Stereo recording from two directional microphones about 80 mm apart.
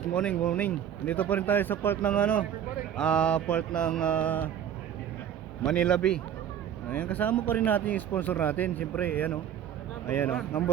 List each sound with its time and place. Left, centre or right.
0.1 s speech: centre
2.0 s mantra: centre
5.6 s mantra: centre
6.9 s speech: left